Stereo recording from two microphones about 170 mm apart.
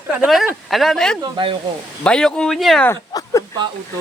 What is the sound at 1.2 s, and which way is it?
Speech, 30° right (ahead or behind).